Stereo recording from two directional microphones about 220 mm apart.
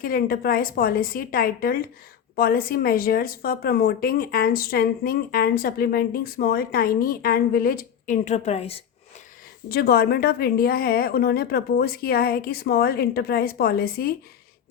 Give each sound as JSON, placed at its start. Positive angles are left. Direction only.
{"t": 0.0, "sound": "speech", "side_deg": 40}
{"t": 9.6, "sound": "speech", "side_deg": 45}